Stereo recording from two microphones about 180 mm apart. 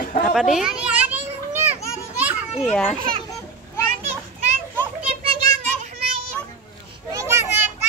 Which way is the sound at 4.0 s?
35° right (ahead or behind).